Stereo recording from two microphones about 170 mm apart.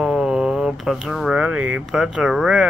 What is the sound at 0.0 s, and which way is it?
Speech, 5° right (ahead or behind).